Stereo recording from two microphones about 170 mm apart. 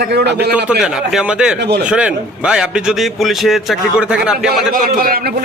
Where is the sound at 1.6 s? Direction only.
80° right.